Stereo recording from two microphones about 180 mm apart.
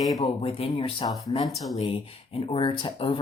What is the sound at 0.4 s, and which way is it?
Speech, 30° left (ahead or behind).